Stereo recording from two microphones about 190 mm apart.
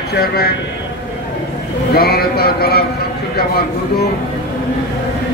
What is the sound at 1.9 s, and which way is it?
Speech, 55° left (ahead or behind).